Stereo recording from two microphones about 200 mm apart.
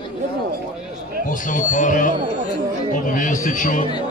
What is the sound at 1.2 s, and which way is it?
Speech, 40° left (ahead or behind).